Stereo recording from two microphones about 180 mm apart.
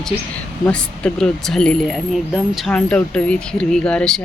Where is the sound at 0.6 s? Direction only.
5° left (ahead or behind).